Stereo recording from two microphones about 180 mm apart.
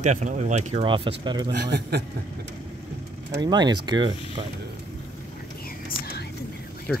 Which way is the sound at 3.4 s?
25° right (ahead or behind).